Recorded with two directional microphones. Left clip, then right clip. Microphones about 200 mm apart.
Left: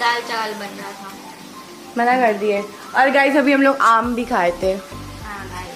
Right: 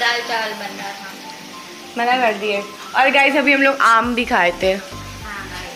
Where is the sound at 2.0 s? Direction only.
25° left (ahead or behind).